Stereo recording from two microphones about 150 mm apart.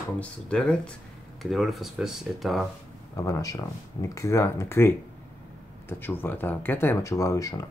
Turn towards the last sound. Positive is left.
turn(degrees=20)  # may be behind; listen again after turning